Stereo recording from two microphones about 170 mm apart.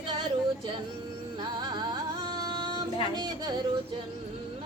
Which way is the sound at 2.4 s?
25° right (ahead or behind).